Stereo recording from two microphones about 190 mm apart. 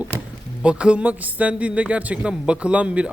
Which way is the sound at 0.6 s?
5° right (ahead or behind).